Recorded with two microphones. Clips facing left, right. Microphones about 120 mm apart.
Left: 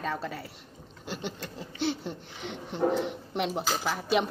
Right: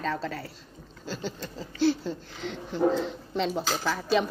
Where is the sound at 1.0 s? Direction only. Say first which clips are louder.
Right 2 dB; 20° left (ahead or behind).